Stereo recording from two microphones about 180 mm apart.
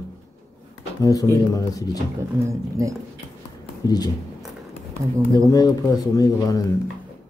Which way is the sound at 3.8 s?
20° left (ahead or behind).